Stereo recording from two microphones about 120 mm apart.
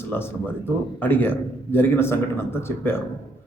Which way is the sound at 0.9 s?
15° left (ahead or behind).